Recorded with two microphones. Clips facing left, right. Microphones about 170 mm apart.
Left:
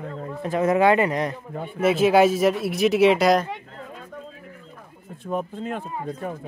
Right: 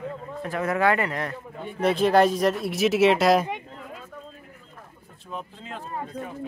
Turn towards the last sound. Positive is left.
turn(degrees=50)  # may be behind; listen again after turning